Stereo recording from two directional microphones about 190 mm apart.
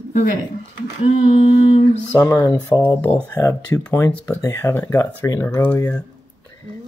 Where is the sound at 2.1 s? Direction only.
15° left (ahead or behind).